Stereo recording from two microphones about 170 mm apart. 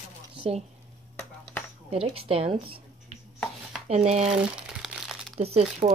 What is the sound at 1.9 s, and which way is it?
Speech, 35° right (ahead or behind).